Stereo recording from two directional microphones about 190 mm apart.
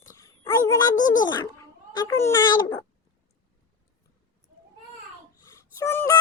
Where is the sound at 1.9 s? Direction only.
15° left (ahead or behind).